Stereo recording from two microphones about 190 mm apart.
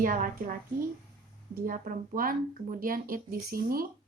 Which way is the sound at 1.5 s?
45° right (ahead or behind).